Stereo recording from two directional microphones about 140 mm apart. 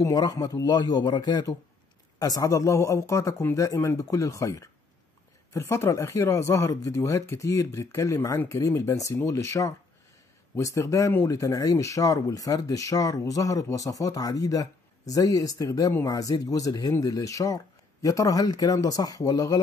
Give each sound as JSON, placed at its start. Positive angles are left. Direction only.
{"t": 0.0, "sound": "speech", "side_deg": 25}